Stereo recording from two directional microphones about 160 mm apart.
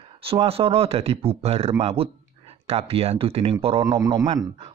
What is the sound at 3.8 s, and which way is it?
Speech, 20° right (ahead or behind).